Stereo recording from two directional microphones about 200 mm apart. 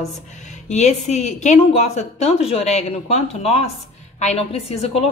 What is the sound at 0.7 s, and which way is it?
A woman's voice, 35° left (ahead or behind).